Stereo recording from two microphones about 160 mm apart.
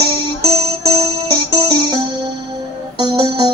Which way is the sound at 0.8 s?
25° right (ahead or behind).